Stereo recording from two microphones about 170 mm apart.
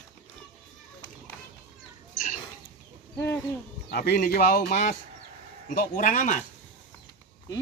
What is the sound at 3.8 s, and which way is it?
Speech, 60° left (ahead or behind).